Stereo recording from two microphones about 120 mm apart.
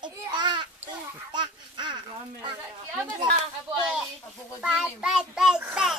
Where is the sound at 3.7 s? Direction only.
5° right (ahead or behind).